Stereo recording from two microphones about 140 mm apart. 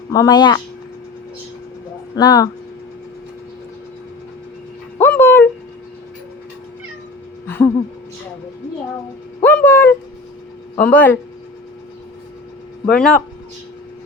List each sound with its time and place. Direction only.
0.1 s speech: 25° left (ahead or behind)
2.1 s speech: 25° left (ahead or behind)
4.9 s dog: 15° left (ahead or behind)
7.4 s a sound: 15° left (ahead or behind)
9.4 s a sound: 15° left (ahead or behind)
10.8 s speech: 10° left (ahead or behind)
12.9 s speech: 5° left (ahead or behind)